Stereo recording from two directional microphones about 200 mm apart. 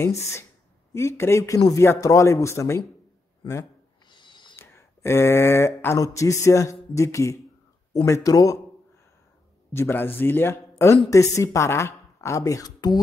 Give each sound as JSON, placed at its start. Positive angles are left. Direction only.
{"t": 0.2, "sound": "speech", "side_deg": 15}
{"t": 4.1, "sound": "owl", "side_deg": 25}
{"t": 4.6, "sound": "speech", "side_deg": 10}
{"t": 9.7, "sound": "speech", "side_deg": 10}